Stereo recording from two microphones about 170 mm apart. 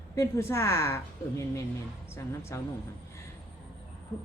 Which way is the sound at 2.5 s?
15° left (ahead or behind).